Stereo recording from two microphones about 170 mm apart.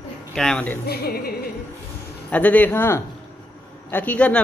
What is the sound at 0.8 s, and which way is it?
Speech, 65° left (ahead or behind).